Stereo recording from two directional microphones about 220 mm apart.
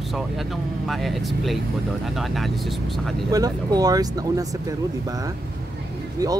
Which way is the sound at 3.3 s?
15° right (ahead or behind).